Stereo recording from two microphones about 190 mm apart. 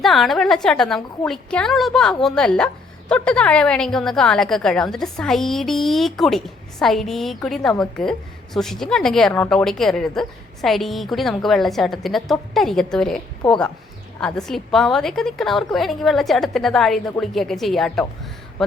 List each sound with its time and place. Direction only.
0.0 s a woman's voice: centre (ahead or behind)